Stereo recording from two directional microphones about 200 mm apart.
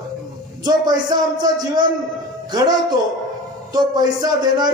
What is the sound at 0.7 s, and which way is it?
A man's voice, 20° right (ahead or behind).